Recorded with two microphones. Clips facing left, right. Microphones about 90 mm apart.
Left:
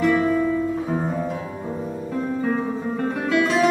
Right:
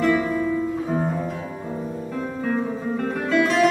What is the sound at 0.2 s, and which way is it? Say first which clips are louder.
Music: left 3 dB; 5° right (ahead or behind).